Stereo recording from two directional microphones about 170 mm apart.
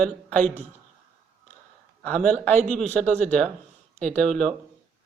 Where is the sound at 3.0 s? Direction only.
40° right (ahead or behind).